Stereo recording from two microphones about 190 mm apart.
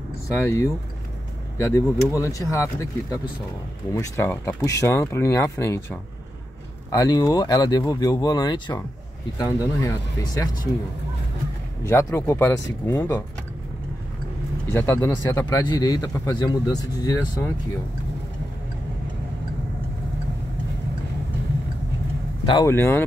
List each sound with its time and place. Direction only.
0.3 s a man's voice: 15° left (ahead or behind)
11.8 s a man's voice: 15° left (ahead or behind)
14.7 s a man's voice: 15° left (ahead or behind)
22.7 s a man's voice: 15° left (ahead or behind)